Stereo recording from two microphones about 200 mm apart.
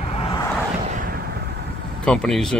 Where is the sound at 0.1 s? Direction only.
25° left (ahead or behind).